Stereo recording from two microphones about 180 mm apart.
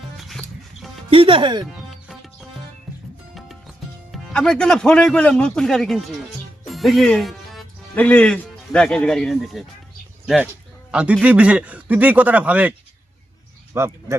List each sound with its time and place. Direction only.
1.1 s speech: 30° right (ahead or behind)
1.9 s music: centre (ahead or behind)
4.1 s a man's voice: 5° left (ahead or behind)
13.7 s speech: 15° right (ahead or behind)